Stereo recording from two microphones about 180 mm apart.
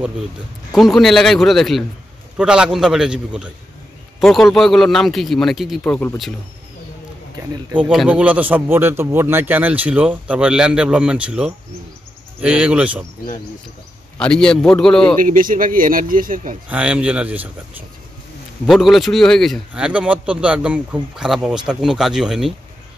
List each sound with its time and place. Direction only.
0.7 s a man's voice: centre (ahead or behind)
7.7 s speech: 5° right (ahead or behind)
14.1 s a man's voice: 5° left (ahead or behind)
15.1 s speech: 50° right (ahead or behind)
16.6 s a man's voice: 5° right (ahead or behind)